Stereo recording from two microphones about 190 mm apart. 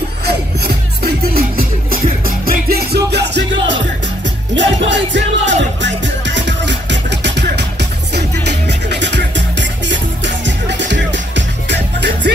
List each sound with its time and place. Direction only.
0.7 s music: 55° right (ahead or behind)
4.6 s music: 70° right (ahead or behind)